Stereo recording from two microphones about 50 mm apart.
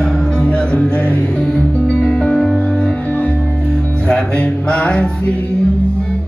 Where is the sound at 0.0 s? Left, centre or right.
Centre.